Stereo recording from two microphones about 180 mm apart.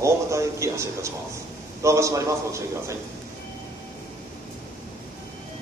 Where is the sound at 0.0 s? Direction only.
15° right (ahead or behind).